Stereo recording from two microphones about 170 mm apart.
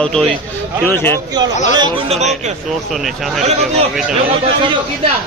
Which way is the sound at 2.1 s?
40° right (ahead or behind).